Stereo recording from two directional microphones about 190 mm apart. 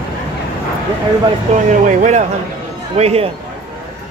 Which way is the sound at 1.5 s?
30° right (ahead or behind).